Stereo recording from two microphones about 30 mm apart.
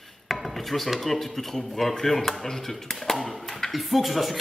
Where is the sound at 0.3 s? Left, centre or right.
Centre.